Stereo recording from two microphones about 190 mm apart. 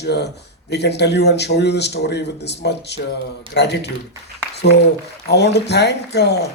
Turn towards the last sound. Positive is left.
turn(degrees=60)  # may be behind; listen again after turning